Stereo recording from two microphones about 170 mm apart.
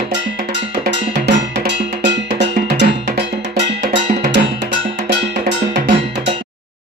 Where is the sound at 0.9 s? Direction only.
90° right.